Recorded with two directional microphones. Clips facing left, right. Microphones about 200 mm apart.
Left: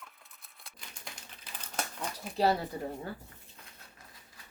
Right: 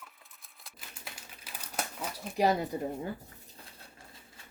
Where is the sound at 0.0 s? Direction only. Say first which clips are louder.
Even; centre (ahead or behind); by 3.2 s 15° right (ahead or behind).